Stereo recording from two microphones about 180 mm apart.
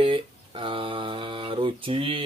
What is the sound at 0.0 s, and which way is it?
Speech, 30° right (ahead or behind).